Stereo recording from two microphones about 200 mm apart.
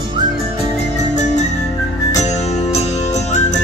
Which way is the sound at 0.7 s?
35° left (ahead or behind).